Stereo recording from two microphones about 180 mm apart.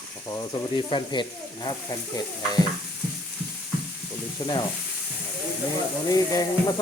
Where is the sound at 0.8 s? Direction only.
25° left (ahead or behind).